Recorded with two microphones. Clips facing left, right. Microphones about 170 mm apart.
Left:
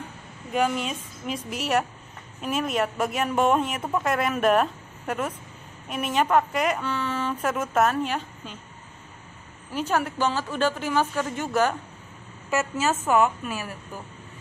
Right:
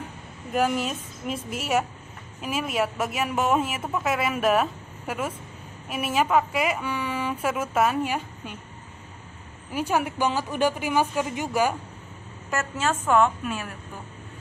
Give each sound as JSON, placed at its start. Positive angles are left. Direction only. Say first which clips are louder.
{"t": 0.5, "sound": "a woman's voice", "louder": "right 1 dB", "side_deg": -5}
{"t": 9.7, "sound": "a woman's voice", "louder": "even", "side_deg": -10}
{"t": 12.4, "sound": "speech", "louder": "left 2 dB", "side_deg": 5}